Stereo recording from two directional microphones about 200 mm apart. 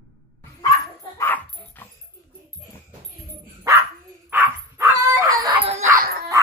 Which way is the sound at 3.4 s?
10° right (ahead or behind).